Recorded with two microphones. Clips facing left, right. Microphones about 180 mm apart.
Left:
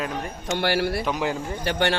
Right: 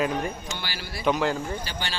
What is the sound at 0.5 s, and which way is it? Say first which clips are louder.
Speech: left 13 dB; 65° left (ahead or behind).